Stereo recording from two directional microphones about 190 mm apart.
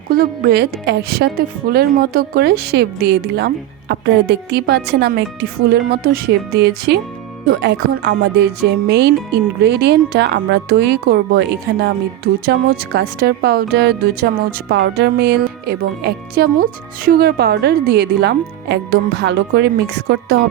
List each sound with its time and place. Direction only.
0.1 s speech: 55° right (ahead or behind)